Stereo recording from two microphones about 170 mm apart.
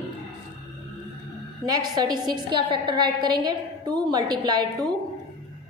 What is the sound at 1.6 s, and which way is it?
A woman's voice, 25° right (ahead or behind).